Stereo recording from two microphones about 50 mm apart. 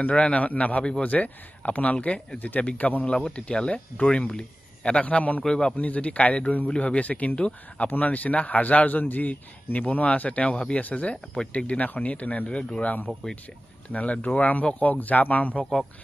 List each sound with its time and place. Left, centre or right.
0.0 s a man's voice: left
5.4 s a man's voice: centre
5.8 s a man's voice: left